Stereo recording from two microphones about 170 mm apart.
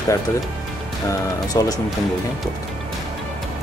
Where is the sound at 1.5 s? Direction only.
20° left (ahead or behind).